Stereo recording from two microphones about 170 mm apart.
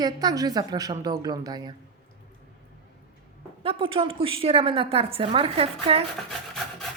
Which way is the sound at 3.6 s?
30° right (ahead or behind).